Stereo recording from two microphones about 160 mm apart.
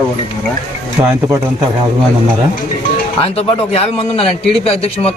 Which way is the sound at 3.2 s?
40° left (ahead or behind).